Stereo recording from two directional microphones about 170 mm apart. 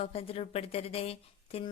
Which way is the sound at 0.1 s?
35° left (ahead or behind).